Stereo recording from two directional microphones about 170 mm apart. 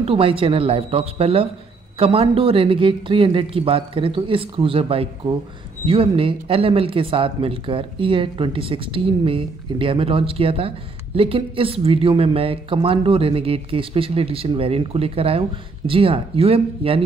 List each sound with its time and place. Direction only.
0.0 s speech: 30° right (ahead or behind)